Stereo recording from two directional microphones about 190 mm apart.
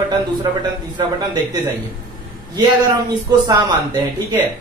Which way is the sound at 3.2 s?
20° right (ahead or behind).